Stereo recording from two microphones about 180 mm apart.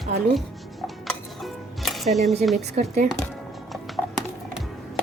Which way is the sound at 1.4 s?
Centre (ahead or behind).